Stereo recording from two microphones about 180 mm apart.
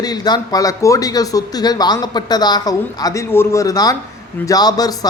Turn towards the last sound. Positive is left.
turn(degrees=20)  # may be behind; listen again after turning